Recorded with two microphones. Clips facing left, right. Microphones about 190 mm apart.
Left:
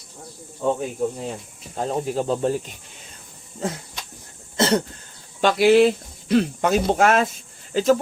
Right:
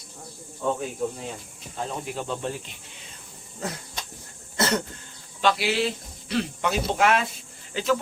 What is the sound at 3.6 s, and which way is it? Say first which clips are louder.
Speech: left 5 dB; 25° left (ahead or behind).